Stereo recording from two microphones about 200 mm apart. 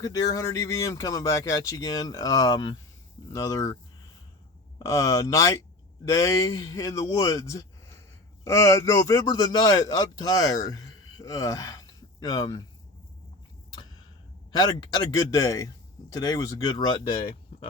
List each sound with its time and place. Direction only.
0.0 s speech: 15° left (ahead or behind)
4.8 s a man's voice: 15° left (ahead or behind)
14.6 s speech: 20° left (ahead or behind)